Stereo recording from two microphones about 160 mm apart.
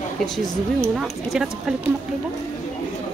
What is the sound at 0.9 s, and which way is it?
Speech, centre (ahead or behind).